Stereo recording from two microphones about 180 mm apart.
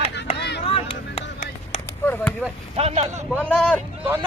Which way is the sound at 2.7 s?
35° right (ahead or behind).